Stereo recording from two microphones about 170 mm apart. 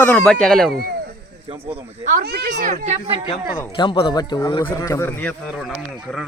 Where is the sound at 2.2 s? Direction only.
70° right (ahead or behind).